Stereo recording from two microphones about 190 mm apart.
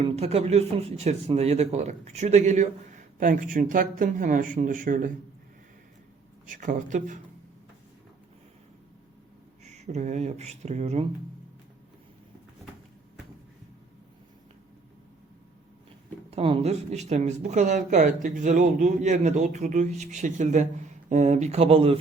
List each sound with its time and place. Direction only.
0.0 s speech: 30° right (ahead or behind)
6.5 s speech: 45° right (ahead or behind)
9.6 s speech: 35° right (ahead or behind)
16.0 s speech: 30° right (ahead or behind)